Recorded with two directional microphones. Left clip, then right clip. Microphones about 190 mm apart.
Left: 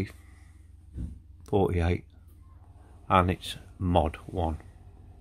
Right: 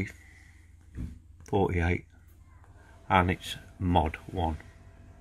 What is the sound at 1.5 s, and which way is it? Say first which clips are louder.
Speech: left 1 dB; 10° left (ahead or behind).